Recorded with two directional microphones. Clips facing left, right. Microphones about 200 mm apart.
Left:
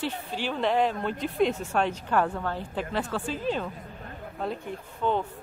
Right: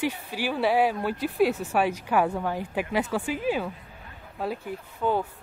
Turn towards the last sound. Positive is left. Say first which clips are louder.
# right 1 dB
turn(degrees=-5)  # may be behind; listen again after turning